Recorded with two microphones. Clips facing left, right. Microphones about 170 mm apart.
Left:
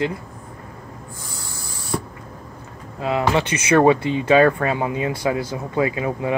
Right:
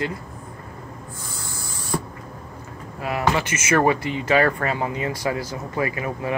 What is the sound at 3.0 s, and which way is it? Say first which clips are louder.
Speech: left 3 dB; 25° left (ahead or behind).